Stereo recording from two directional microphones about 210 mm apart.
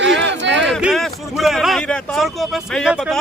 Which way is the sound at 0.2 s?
55° right (ahead or behind).